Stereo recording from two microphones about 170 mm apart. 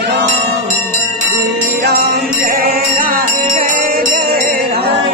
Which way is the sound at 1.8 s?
65° right (ahead or behind).